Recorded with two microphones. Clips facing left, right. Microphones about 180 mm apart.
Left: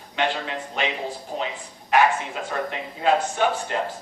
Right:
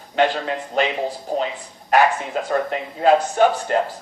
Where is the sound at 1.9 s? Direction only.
40° right (ahead or behind).